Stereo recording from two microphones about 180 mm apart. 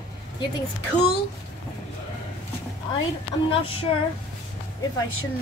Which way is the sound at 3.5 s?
30° left (ahead or behind).